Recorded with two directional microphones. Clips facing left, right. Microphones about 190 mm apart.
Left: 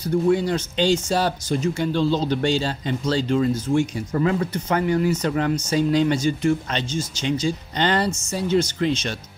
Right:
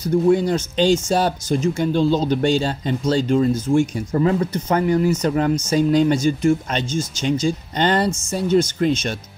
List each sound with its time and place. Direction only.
0.0 s speech: 45° right (ahead or behind)